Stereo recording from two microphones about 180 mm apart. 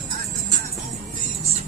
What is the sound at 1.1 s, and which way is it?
Music, 35° right (ahead or behind).